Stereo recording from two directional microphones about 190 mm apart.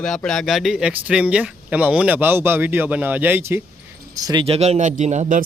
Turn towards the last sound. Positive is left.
turn(degrees=-40)  # may be behind; listen again after turning